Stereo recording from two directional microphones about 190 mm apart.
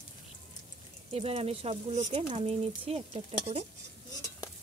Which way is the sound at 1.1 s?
30° right (ahead or behind).